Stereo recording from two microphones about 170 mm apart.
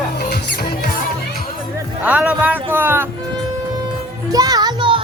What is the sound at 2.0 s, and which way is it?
Speech, 5° right (ahead or behind).